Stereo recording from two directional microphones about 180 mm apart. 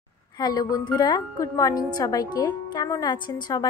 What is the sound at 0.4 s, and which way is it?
A woman's voice, 20° left (ahead or behind).